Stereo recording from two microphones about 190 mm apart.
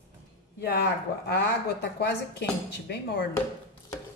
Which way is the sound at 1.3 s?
60° left (ahead or behind).